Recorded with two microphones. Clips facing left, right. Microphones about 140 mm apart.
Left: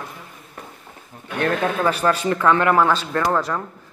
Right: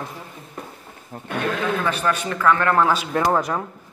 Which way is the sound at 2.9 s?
15° right (ahead or behind).